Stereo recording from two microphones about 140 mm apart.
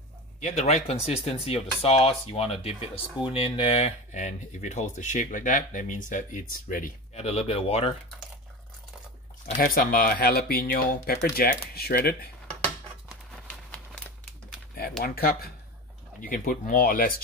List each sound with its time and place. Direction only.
0.4 s speech: 55° left (ahead or behind); by 6.9 s 75° left (ahead or behind)
7.2 s speech: 45° left (ahead or behind)
9.6 s speech: 90° left
13.5 s a sound: 10° left (ahead or behind)
15.0 s speech: 90° left
16.2 s speech: 75° left (ahead or behind)